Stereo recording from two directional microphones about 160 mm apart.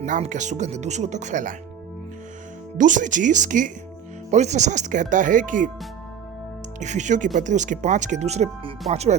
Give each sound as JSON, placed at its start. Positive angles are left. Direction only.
{"t": 0.0, "sound": "speech", "side_deg": -50}
{"t": 2.7, "sound": "speech", "side_deg": -55}
{"t": 6.7, "sound": "speech", "side_deg": -50}